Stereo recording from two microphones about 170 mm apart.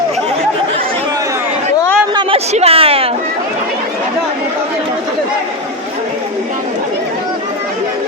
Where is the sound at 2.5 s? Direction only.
35° right (ahead or behind).